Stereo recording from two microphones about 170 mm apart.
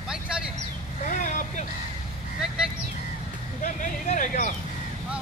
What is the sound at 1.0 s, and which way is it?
Vehicle, 50° left (ahead or behind).